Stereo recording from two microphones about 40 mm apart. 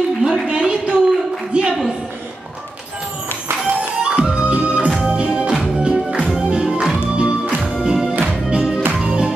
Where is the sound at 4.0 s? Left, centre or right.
Right.